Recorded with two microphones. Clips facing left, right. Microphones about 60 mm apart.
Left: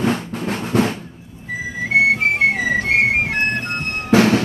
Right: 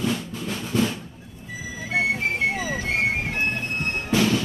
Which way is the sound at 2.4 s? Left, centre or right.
Left.